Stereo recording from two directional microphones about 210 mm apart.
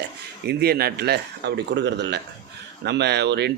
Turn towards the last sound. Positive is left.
turn(degrees=-55)  # may be behind; listen again after turning